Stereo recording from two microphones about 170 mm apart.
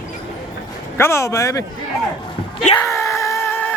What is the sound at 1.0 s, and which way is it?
Speech, 15° left (ahead or behind).